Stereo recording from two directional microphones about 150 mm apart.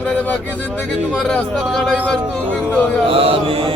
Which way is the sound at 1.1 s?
5° left (ahead or behind).